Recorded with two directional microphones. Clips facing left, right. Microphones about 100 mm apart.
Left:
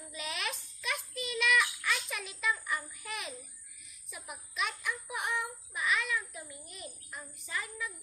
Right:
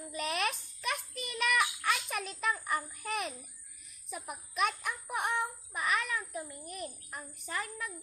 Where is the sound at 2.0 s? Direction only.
45° right (ahead or behind).